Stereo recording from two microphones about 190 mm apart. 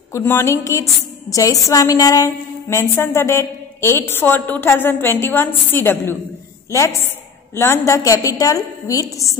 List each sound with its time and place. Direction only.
0.1 s a woman's voice: 15° left (ahead or behind)
7.5 s a woman's voice: 15° left (ahead or behind)